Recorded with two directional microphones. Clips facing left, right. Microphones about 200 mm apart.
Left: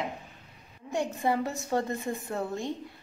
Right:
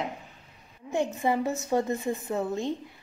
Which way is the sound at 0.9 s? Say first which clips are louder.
Right 2 dB; 15° right (ahead or behind).